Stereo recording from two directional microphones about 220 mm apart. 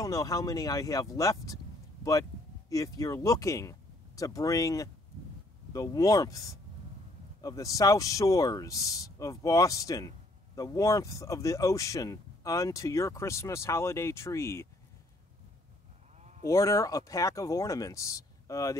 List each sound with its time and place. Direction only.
0.0 s speech: 15° left (ahead or behind)
2.7 s speech: 15° left (ahead or behind)
16.2 s sheep: 30° right (ahead or behind)
16.4 s speech: 15° left (ahead or behind)